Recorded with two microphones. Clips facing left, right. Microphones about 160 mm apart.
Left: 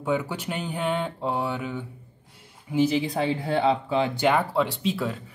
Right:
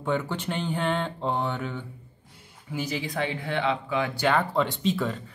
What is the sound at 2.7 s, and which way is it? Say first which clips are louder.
Speech: left 8 dB; 25° left (ahead or behind).